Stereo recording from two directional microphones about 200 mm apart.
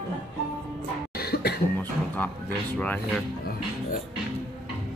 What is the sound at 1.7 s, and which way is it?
Music, 10° left (ahead or behind).